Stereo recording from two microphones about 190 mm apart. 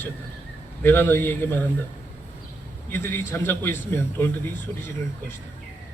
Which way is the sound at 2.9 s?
10° left (ahead or behind).